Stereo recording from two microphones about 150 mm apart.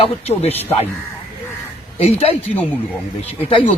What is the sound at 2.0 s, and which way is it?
Speech, 40° left (ahead or behind).